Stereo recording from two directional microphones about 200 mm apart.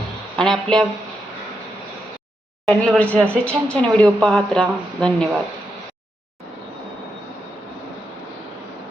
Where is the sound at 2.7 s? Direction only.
5° left (ahead or behind).